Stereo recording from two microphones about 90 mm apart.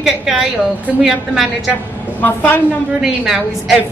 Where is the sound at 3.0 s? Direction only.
5° right (ahead or behind).